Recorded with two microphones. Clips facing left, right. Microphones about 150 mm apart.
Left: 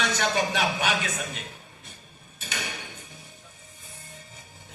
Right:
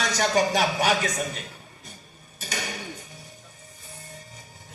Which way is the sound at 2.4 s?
40° right (ahead or behind).